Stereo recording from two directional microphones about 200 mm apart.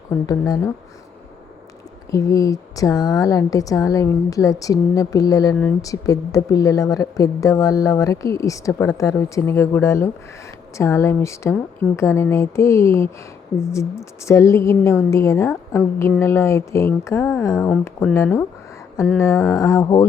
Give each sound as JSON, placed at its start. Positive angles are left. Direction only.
{"t": 0.1, "sound": "speech", "side_deg": 15}
{"t": 2.0, "sound": "speech", "side_deg": 15}